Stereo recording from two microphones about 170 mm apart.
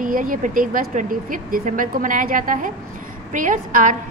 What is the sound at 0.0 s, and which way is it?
A woman's voice, 55° right (ahead or behind).